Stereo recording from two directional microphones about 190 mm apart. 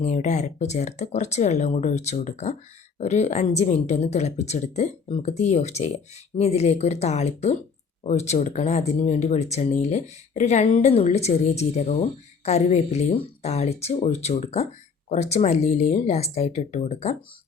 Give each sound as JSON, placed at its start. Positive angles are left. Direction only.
{"t": 0.0, "sound": "a woman's voice", "side_deg": 40}